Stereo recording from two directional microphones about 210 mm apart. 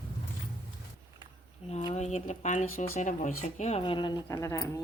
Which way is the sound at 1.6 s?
25° left (ahead or behind).